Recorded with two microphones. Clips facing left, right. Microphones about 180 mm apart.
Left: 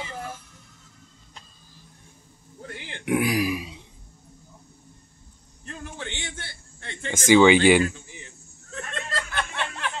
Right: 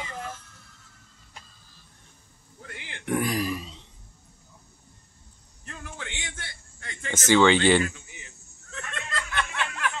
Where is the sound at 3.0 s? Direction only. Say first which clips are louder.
Left 3 dB; 10° left (ahead or behind).